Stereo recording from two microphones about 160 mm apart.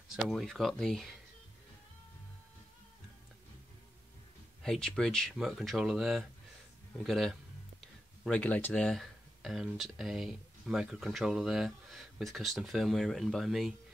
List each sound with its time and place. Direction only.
0.1 s speech: centre (ahead or behind)
4.6 s speech: 5° left (ahead or behind)